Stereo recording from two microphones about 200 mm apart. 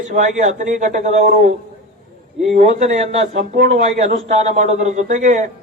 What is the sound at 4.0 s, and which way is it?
Speech, 35° right (ahead or behind).